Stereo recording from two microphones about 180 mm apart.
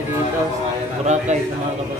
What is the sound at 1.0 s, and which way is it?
Speech, 40° right (ahead or behind).